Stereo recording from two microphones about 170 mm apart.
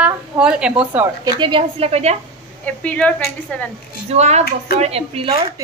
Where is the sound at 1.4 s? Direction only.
30° right (ahead or behind).